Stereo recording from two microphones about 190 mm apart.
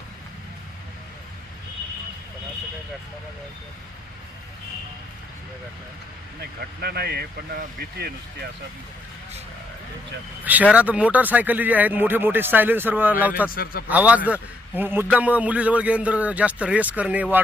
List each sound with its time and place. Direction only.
6.4 s speech: 55° right (ahead or behind)
10.4 s speech: 10° right (ahead or behind)
13.5 s speech: 50° left (ahead or behind)
13.8 s speech: 10° right (ahead or behind)